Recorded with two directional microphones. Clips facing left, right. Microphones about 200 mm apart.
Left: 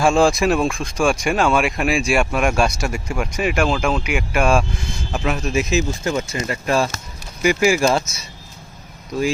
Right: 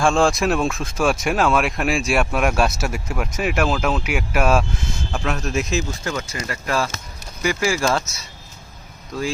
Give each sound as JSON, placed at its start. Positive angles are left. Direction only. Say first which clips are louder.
{"t": 0.0, "sound": "speech", "louder": "left 2 dB", "side_deg": 5}
{"t": 5.7, "sound": "speech", "louder": "left 4 dB", "side_deg": 25}
{"t": 9.1, "sound": "speech", "louder": "left 5 dB", "side_deg": 15}